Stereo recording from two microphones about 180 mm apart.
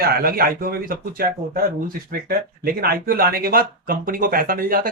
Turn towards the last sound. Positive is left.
turn(degrees=-55)  # may be behind; listen again after turning